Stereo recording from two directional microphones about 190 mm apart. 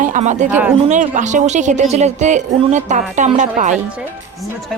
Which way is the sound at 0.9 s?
40° right (ahead or behind).